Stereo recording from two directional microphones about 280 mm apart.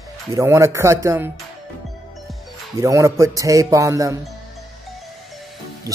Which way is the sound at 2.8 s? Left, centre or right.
Centre.